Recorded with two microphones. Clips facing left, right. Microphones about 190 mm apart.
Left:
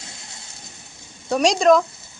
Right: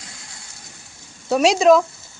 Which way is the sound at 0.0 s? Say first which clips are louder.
Left 1 dB; 25° left (ahead or behind).